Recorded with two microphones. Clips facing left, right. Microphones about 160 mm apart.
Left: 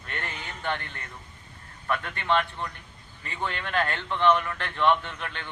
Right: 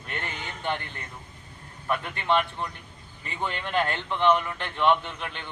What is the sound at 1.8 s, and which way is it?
Speech, 15° right (ahead or behind).